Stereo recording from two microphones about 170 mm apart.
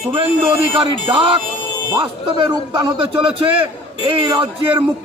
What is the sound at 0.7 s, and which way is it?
A man's voice, 30° right (ahead or behind).